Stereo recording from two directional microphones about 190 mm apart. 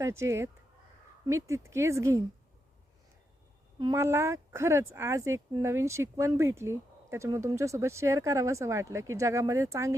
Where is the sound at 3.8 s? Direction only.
15° right (ahead or behind).